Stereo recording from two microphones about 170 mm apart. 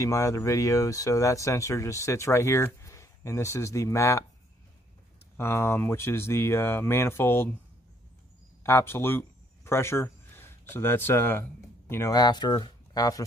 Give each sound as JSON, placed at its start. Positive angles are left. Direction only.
{"t": 0.0, "sound": "speech", "side_deg": 20}
{"t": 5.4, "sound": "speech", "side_deg": 15}
{"t": 8.6, "sound": "speech", "side_deg": 15}